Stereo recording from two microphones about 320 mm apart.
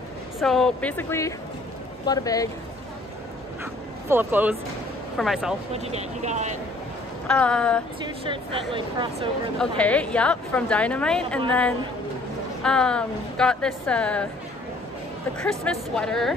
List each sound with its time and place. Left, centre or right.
0.4 s a woman's voice: centre
4.1 s a woman's voice: centre
5.7 s speech: centre
7.2 s a woman's voice: centre
8.7 s speech: centre
9.6 s a woman's voice: centre
12.6 s a woman's voice: centre
15.4 s a woman's voice: centre